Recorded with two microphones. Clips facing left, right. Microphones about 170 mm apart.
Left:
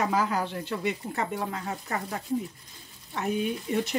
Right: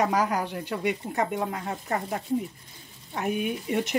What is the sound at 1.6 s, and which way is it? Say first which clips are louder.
Speech: right 3 dB; 40° right (ahead or behind).